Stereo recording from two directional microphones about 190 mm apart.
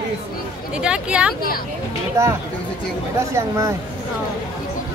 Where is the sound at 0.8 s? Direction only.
5° right (ahead or behind).